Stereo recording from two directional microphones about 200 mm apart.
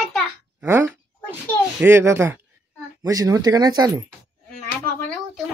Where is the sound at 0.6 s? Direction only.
10° right (ahead or behind).